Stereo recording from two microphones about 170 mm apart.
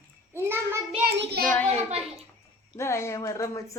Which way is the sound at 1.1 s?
80° right.